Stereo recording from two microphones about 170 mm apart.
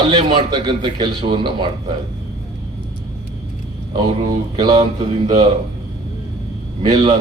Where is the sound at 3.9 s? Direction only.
25° right (ahead or behind).